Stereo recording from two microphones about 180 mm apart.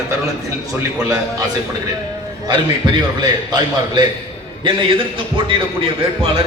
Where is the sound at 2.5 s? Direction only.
25° right (ahead or behind).